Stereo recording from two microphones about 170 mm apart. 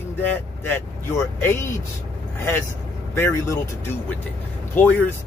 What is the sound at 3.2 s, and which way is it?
Speech, 15° left (ahead or behind).